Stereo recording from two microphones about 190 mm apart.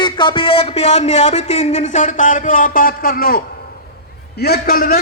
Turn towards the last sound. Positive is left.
turn(degrees=50)  # may be behind; listen again after turning